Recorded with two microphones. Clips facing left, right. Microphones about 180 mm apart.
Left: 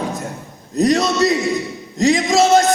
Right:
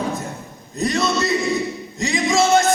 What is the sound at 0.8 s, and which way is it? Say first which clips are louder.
Music: left 6 dB; 40° left (ahead or behind).